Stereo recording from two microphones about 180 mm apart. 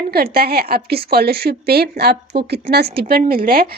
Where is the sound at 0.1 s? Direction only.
60° right (ahead or behind).